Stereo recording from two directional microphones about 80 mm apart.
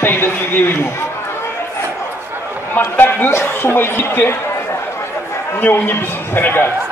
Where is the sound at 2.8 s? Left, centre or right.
Left.